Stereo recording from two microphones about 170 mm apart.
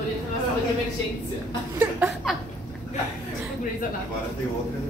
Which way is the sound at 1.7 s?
10° right (ahead or behind).